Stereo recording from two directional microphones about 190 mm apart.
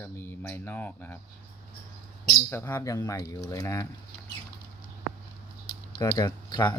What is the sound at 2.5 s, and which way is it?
Speech, 15° left (ahead or behind).